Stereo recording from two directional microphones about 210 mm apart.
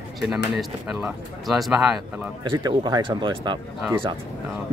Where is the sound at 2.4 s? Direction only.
20° right (ahead or behind).